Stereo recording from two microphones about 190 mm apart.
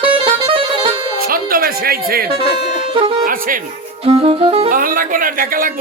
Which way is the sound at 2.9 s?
30° right (ahead or behind).